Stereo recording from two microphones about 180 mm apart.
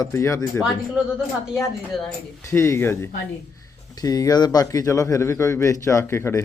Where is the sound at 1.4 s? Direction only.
Centre (ahead or behind).